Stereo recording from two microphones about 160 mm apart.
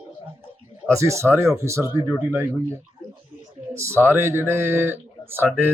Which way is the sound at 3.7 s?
15° right (ahead or behind).